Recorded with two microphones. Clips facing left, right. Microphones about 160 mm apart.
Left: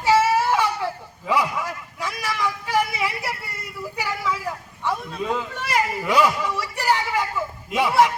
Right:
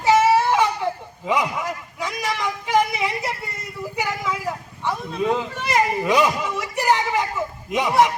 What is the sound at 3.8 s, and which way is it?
Speech, 15° right (ahead or behind).